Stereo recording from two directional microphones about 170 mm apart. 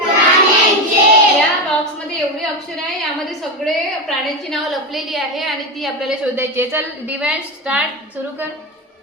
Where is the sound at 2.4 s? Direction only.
Centre (ahead or behind).